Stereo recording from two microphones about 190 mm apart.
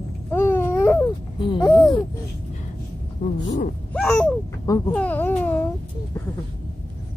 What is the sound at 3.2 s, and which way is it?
Speech, 40° left (ahead or behind).